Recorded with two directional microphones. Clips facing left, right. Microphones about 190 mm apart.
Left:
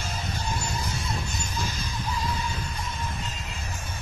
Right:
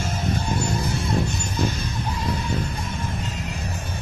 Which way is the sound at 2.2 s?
65° right (ahead or behind).